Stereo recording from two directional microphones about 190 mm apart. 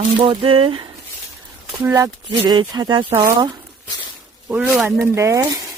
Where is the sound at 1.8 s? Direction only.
15° right (ahead or behind).